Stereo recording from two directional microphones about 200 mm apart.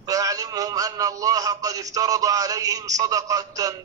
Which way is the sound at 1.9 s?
15° right (ahead or behind).